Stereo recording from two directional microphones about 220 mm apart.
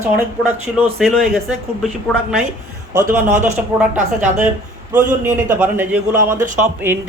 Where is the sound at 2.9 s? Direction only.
15° right (ahead or behind).